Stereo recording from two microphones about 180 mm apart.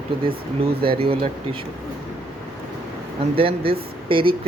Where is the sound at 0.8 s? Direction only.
30° right (ahead or behind).